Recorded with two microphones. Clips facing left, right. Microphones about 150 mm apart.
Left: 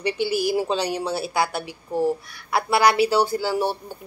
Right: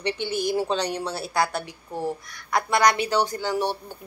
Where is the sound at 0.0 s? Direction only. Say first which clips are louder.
Left 3 dB; 10° left (ahead or behind).